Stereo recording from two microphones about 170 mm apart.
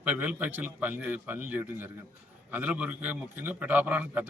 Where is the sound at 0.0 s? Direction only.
5° right (ahead or behind).